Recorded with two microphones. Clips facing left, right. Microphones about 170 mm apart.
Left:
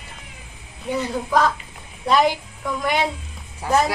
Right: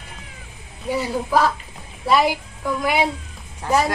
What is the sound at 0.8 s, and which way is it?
A woman's voice, 5° right (ahead or behind).